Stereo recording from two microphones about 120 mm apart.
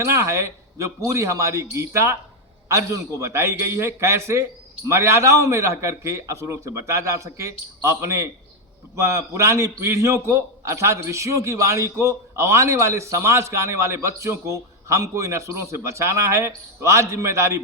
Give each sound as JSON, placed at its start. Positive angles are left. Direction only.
{"t": 0.0, "sound": "a man's voice", "side_deg": -25}